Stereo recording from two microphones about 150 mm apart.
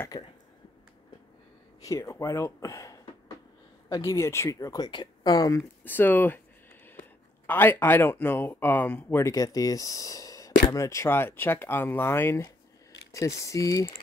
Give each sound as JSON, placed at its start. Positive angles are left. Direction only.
{"t": 0.1, "sound": "speech", "side_deg": 30}
{"t": 1.8, "sound": "speech", "side_deg": 20}
{"t": 5.9, "sound": "speech", "side_deg": 10}
{"t": 7.4, "sound": "speech", "side_deg": 10}